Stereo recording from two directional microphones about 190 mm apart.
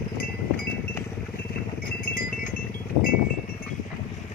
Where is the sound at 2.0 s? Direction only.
45° left (ahead or behind).